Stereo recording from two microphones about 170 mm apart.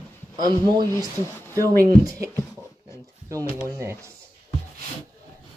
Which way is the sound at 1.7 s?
20° right (ahead or behind).